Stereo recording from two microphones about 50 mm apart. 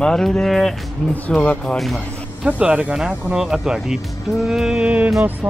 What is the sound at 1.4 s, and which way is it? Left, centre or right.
Speech, left.